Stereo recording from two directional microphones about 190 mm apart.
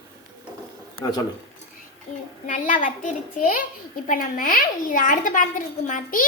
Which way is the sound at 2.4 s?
40° left (ahead or behind).